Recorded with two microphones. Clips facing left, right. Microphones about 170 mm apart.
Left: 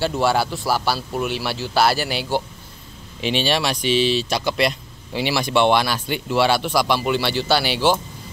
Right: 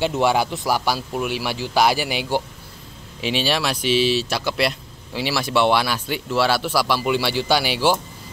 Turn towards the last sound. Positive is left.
turn(degrees=-10)  # may be behind; listen again after turning